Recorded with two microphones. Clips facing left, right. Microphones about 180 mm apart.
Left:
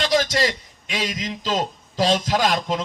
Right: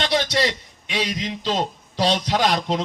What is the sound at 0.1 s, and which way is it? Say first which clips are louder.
A man's voice: left 1 dB; 45° left (ahead or behind).